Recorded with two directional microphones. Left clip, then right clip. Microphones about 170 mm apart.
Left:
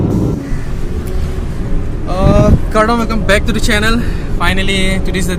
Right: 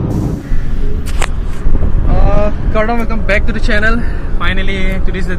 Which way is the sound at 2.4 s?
20° left (ahead or behind).